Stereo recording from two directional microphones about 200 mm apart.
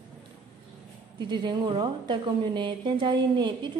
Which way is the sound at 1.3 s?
25° right (ahead or behind).